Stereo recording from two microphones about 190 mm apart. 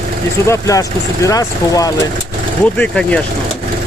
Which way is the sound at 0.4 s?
15° left (ahead or behind).